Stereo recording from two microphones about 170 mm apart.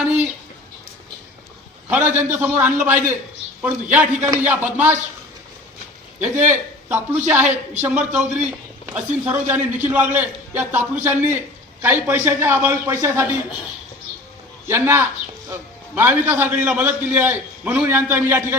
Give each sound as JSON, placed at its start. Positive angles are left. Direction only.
{"t": 1.9, "sound": "a man's voice", "side_deg": -10}
{"t": 6.1, "sound": "a man's voice", "side_deg": -10}
{"t": 14.7, "sound": "a man's voice", "side_deg": -15}